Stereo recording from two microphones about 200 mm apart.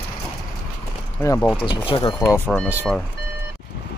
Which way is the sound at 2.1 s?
10° left (ahead or behind).